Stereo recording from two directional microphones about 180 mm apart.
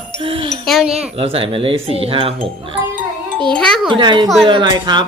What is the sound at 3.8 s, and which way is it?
Speech, 25° right (ahead or behind).